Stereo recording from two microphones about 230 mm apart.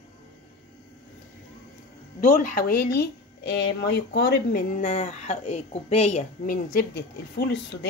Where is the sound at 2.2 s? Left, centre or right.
Left.